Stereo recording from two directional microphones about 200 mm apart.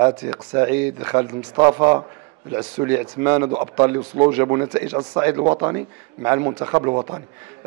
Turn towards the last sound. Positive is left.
turn(degrees=-25)  # may be behind; listen again after turning